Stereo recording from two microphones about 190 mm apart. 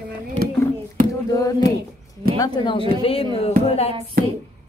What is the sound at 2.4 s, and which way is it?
Speech, 25° left (ahead or behind).